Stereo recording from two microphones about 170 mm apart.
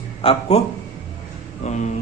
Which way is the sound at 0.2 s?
35° left (ahead or behind).